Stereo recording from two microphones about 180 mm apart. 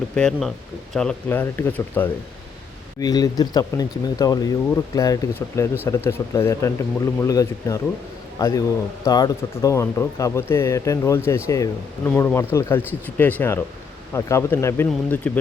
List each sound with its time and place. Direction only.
0.2 s speech: centre (ahead or behind)
3.0 s speech: 20° left (ahead or behind)